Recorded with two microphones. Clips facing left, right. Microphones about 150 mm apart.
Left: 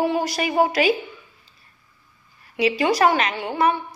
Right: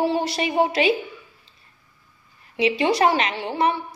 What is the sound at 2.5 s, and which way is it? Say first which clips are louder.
A woman's voice: even; 25° right (ahead or behind).